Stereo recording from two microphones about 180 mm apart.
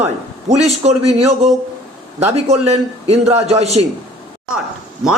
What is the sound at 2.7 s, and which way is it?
A man's voice, 35° right (ahead or behind).